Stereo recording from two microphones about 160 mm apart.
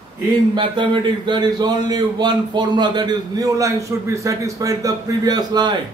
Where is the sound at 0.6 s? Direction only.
30° right (ahead or behind).